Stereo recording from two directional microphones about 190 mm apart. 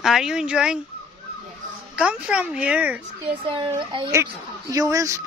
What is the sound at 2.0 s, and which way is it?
Speech, 5° right (ahead or behind).